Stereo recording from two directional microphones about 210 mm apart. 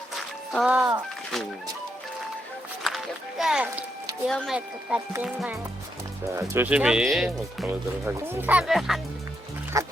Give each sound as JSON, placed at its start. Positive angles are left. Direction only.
{"t": 0.5, "sound": "speech", "side_deg": -5}
{"t": 2.8, "sound": "run", "side_deg": 0}
{"t": 4.3, "sound": "speech", "side_deg": 0}
{"t": 9.7, "sound": "speech", "side_deg": -15}